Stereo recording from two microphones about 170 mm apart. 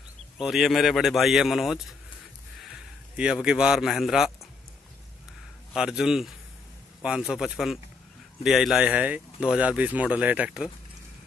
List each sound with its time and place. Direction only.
0.4 s speech: centre (ahead or behind)
3.2 s speech: 5° right (ahead or behind)
5.7 s speech: 5° right (ahead or behind)